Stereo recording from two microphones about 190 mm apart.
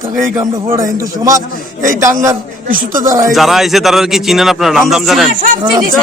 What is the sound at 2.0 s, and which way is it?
Speech, 15° right (ahead or behind).